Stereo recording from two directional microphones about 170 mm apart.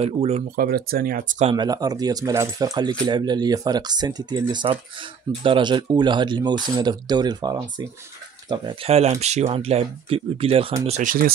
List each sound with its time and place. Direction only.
0.0 s speech: 40° right (ahead or behind)
0.6 s speech: 60° right (ahead or behind)
1.5 s speech: 25° right (ahead or behind)
10.9 s speech: 50° right (ahead or behind)